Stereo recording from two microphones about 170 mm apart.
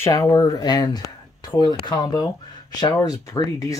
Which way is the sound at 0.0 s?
20° left (ahead or behind).